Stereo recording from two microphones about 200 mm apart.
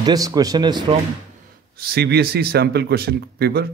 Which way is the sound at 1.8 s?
50° right (ahead or behind).